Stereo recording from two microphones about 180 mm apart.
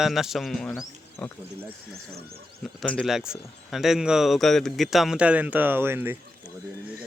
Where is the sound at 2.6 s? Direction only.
Centre (ahead or behind).